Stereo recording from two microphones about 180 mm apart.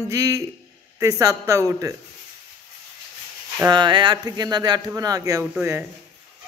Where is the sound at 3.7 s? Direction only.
25° right (ahead or behind).